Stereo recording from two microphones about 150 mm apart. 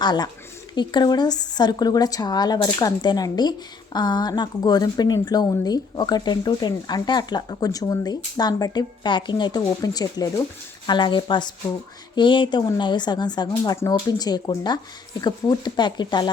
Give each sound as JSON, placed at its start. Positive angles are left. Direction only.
{"t": 0.0, "sound": "a woman's voice", "side_deg": 30}